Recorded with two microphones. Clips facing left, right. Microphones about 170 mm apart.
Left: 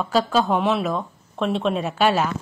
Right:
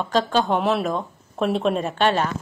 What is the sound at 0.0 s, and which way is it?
A woman's voice, 5° left (ahead or behind).